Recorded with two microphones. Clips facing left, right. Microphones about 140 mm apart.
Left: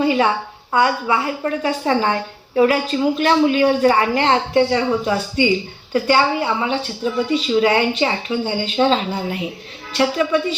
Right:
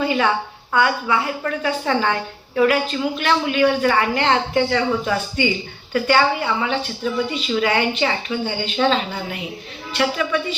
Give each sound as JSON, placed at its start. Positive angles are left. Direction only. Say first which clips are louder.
{"t": 0.0, "sound": "a woman's voice", "louder": "left 3 dB", "side_deg": 35}
{"t": 10.0, "sound": "a woman's voice", "louder": "left 4 dB", "side_deg": 30}